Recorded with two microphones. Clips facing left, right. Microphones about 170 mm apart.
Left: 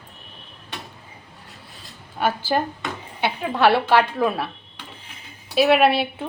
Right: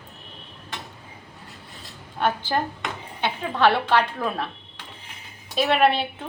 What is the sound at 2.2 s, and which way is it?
A woman's voice, 5° left (ahead or behind).